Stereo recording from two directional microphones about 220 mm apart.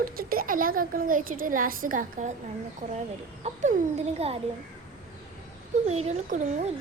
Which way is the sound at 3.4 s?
30° right (ahead or behind).